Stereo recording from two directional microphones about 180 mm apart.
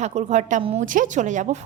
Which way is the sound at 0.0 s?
40° right (ahead or behind).